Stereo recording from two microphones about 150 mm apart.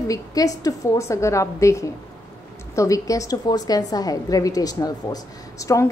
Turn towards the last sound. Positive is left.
turn(degrees=20)  # may be behind; listen again after turning